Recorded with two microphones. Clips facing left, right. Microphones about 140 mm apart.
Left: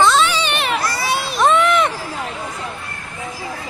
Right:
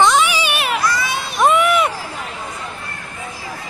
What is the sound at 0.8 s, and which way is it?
Children playing, 35° left (ahead or behind).